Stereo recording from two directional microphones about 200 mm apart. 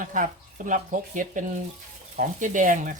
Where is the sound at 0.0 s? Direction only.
40° right (ahead or behind).